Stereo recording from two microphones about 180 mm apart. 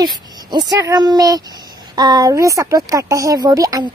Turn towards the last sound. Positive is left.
turn(degrees=-20)  # may be behind; listen again after turning